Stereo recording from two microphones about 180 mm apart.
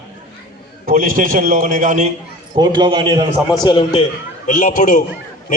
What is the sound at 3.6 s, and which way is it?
Speech, 25° left (ahead or behind).